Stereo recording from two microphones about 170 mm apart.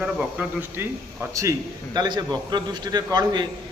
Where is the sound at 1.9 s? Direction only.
25° right (ahead or behind).